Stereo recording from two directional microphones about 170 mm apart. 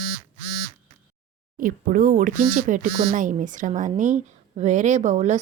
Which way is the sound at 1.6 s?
55° right (ahead or behind).